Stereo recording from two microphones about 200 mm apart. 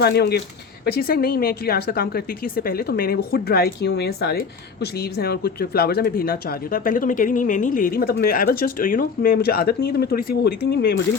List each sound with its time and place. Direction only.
0.0 s speech: 55° left (ahead or behind)